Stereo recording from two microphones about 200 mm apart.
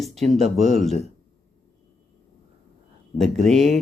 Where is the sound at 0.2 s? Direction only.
30° right (ahead or behind).